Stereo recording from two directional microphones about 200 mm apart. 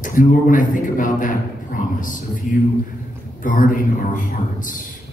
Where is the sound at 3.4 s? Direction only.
40° left (ahead or behind).